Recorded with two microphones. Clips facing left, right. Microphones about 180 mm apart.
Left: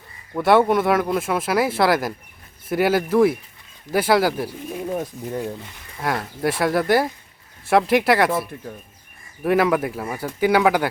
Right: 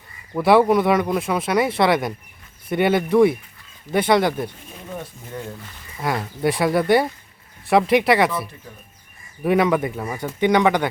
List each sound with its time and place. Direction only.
0.3 s speech: centre (ahead or behind)
4.9 s speech: 35° left (ahead or behind)
6.0 s speech: centre (ahead or behind)
9.4 s speech: centre (ahead or behind)